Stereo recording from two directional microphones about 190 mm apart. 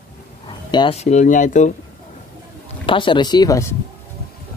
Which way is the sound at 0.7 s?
25° left (ahead or behind).